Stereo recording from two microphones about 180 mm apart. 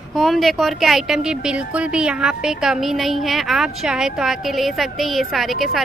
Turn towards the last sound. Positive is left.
turn(degrees=0)  # may be behind; listen again after turning